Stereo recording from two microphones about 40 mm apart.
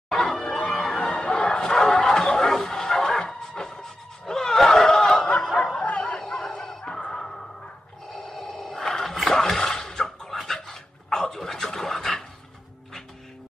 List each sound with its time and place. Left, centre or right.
0.1 s music: centre
0.7 s bow-wow: centre
5.1 s snicker: left
5.4 s snicker: centre
5.9 s bow-wow: left
6.1 s dog: centre
7.0 s music: left
8.1 s a sound: centre
10.3 s dog: centre